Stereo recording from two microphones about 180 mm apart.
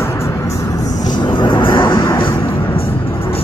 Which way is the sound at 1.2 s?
25° left (ahead or behind).